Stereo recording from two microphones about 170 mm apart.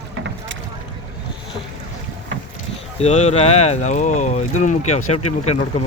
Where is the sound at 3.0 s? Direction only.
40° left (ahead or behind).